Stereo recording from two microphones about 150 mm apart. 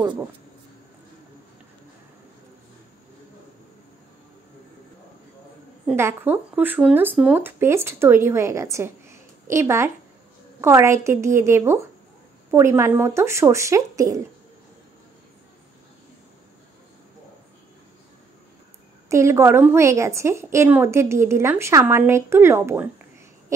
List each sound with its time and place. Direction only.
5.9 s speech: 15° right (ahead or behind)
19.0 s speech: 20° right (ahead or behind)